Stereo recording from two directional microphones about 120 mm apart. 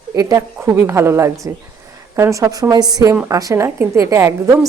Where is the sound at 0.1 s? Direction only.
25° right (ahead or behind).